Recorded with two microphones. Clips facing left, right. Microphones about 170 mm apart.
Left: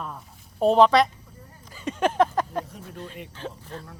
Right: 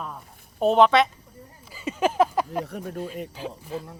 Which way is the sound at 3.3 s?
10° right (ahead or behind).